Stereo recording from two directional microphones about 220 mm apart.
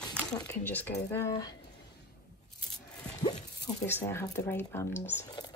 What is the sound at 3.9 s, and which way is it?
Speech, 10° left (ahead or behind).